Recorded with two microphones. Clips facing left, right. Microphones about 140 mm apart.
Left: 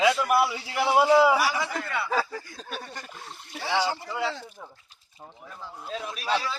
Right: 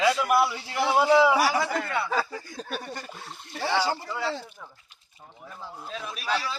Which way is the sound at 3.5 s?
5° left (ahead or behind).